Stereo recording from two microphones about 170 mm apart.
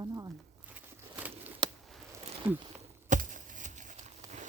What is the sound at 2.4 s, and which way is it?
Speech, 10° right (ahead or behind).